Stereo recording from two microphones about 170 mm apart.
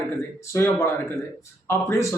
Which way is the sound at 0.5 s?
15° left (ahead or behind).